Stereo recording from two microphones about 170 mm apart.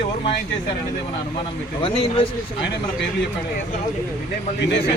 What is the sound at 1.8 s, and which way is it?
Speech, 30° left (ahead or behind).